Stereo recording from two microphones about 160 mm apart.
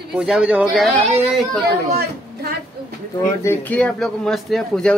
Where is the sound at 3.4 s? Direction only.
15° left (ahead or behind).